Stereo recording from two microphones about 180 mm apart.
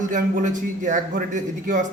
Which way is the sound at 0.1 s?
45° right (ahead or behind).